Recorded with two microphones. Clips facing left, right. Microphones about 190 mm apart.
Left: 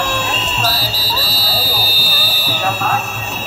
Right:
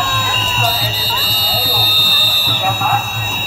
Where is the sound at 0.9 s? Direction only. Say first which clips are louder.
Left 1 dB; 10° left (ahead or behind).